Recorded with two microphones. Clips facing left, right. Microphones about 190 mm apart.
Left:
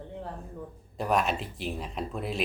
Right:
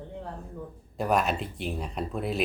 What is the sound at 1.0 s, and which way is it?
Speech, centre (ahead or behind).